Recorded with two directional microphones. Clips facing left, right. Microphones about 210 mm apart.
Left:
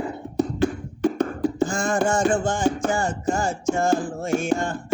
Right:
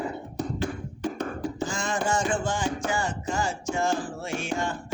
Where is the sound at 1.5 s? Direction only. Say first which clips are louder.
Left 8 dB; 50° left (ahead or behind).